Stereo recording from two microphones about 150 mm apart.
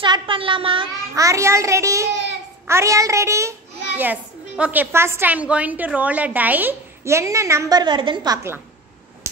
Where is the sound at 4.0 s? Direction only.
10° right (ahead or behind); by 8.3 s 30° right (ahead or behind).